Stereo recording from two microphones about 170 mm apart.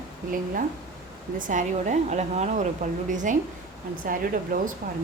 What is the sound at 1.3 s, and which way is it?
A woman's voice, 50° right (ahead or behind).